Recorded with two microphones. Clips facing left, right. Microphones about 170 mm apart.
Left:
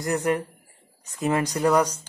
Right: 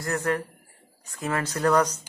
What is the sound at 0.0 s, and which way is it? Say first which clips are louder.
Speech: left 3 dB; 20° left (ahead or behind).